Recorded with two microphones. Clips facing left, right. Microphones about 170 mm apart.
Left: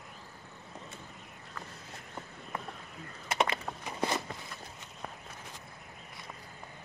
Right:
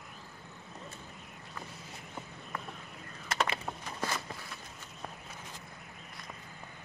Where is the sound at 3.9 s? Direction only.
15° left (ahead or behind).